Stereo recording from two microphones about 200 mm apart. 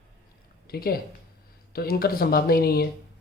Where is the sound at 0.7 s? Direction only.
50° left (ahead or behind).